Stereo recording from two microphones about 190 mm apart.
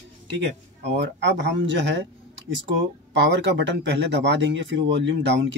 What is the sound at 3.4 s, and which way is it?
Speech, 70° right (ahead or behind).